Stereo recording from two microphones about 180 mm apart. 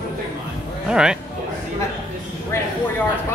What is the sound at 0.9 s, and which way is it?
Speech, 5° right (ahead or behind).